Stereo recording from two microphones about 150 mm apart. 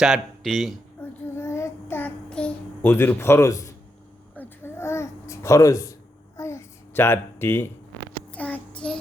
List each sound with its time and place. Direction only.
0.0 s speech: centre (ahead or behind)
1.0 s child singing: 10° left (ahead or behind)
4.4 s babbling: 15° left (ahead or behind)
8.3 s child singing: 10° left (ahead or behind)